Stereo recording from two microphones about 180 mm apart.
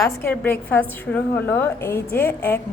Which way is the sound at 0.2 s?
10° left (ahead or behind).